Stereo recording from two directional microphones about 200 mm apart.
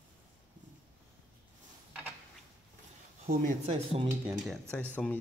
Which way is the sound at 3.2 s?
30° right (ahead or behind).